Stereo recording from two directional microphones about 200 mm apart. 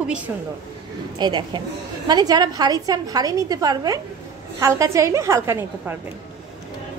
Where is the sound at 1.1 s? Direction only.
20° right (ahead or behind).